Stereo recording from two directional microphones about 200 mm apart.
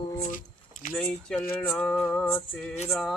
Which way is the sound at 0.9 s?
5° left (ahead or behind).